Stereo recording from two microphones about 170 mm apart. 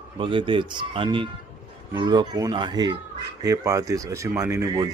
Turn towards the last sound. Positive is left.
turn(degrees=-20)  # may be behind; listen again after turning